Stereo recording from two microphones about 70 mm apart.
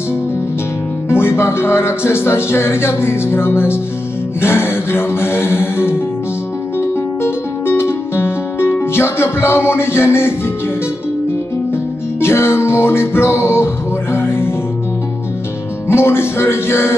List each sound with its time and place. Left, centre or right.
1.0 s music: left
11.7 s music: left
15.9 s music: left